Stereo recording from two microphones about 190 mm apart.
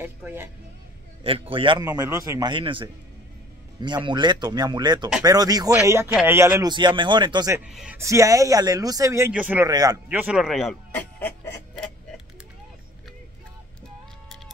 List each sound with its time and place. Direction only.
0.0 s speech: 10° right (ahead or behind)
1.2 s speech: 30° right (ahead or behind)
1.9 s speech: 15° right (ahead or behind)
7.6 s speech: 5° right (ahead or behind)
8.0 s speech: 15° right (ahead or behind)
9.7 s speech: 20° right (ahead or behind)
10.0 s speech: 5° right (ahead or behind)
10.9 s a sound: 10° left (ahead or behind)